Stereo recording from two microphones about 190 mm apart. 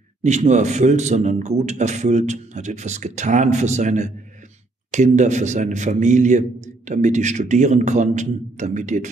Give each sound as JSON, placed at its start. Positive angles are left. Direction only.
{"t": 0.2, "sound": "a man's voice", "side_deg": -40}